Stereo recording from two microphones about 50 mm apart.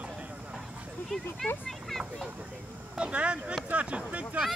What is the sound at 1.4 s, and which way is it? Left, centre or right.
Speech, centre.